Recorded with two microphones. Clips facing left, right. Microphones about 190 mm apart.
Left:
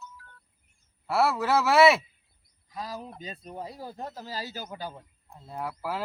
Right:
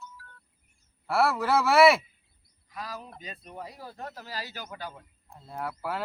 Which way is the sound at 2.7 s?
25° left (ahead or behind).